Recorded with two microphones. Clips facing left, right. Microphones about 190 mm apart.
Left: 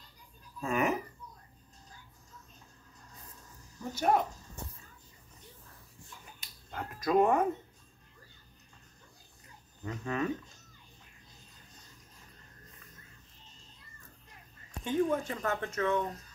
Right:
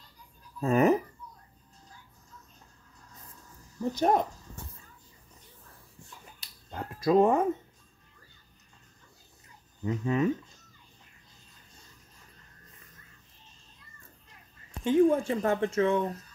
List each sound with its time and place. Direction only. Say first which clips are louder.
0.6 s a sound: right 8 dB; 35° right (ahead or behind)
4.0 s speech: right 3 dB; 35° right (ahead or behind)
6.4 s speech: right 2 dB; 30° right (ahead or behind)
9.8 s speech: right 7 dB; 20° right (ahead or behind)
14.9 s speech: right 7 dB; 25° right (ahead or behind)